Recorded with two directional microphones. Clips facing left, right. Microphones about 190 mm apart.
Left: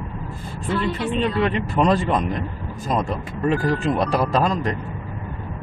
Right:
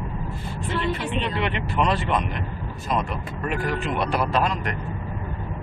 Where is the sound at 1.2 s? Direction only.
35° left (ahead or behind).